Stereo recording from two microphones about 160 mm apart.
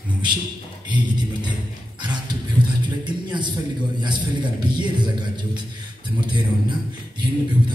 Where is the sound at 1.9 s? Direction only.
25° right (ahead or behind).